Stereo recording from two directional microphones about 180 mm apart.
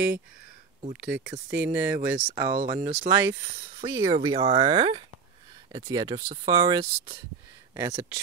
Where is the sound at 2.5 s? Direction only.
40° right (ahead or behind).